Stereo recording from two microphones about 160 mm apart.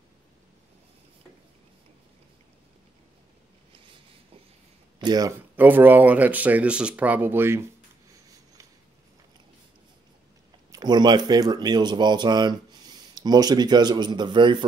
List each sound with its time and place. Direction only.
4.9 s speech: 25° right (ahead or behind)
5.6 s speech: 10° right (ahead or behind)
10.7 s speech: 25° right (ahead or behind)